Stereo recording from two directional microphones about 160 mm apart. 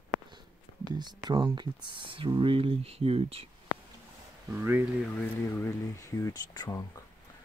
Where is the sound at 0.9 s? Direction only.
25° right (ahead or behind).